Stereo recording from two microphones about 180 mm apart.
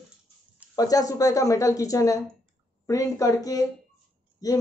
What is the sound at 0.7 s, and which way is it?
Speech, 20° left (ahead or behind).